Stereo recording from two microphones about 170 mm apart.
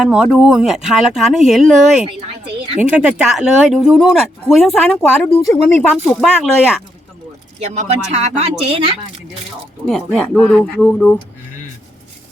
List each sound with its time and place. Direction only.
0.0 s speech: 5° right (ahead or behind)
7.6 s speech: 40° right (ahead or behind)
9.8 s speech: 5° left (ahead or behind)